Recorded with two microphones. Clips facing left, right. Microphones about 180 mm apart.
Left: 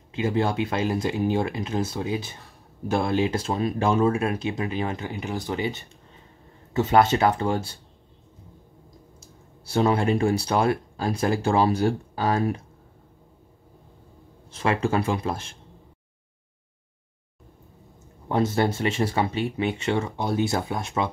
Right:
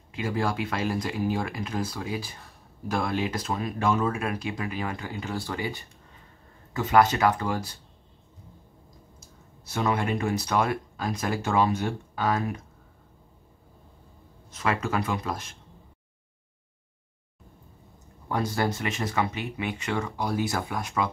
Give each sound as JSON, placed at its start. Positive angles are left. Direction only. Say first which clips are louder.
{"t": 0.1, "sound": "speech", "louder": "left 4 dB", "side_deg": 25}
{"t": 9.2, "sound": "speech", "louder": "left 3 dB", "side_deg": 30}
{"t": 14.5, "sound": "speech", "louder": "left 4 dB", "side_deg": 30}
{"t": 18.3, "sound": "speech", "louder": "left 4 dB", "side_deg": 25}